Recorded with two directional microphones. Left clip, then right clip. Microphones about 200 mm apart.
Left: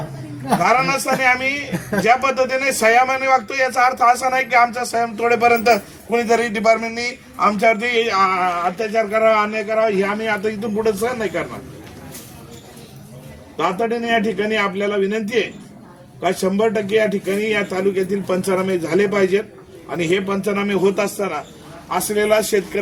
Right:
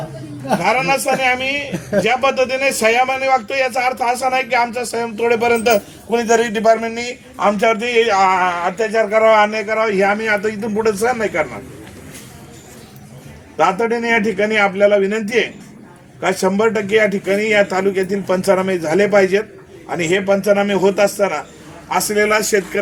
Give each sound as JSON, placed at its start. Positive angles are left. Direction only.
{"t": 0.7, "sound": "speech", "side_deg": 10}
{"t": 1.5, "sound": "a woman's voice", "side_deg": 55}
{"t": 2.0, "sound": "speech", "side_deg": 10}
{"t": 13.7, "sound": "speech", "side_deg": 10}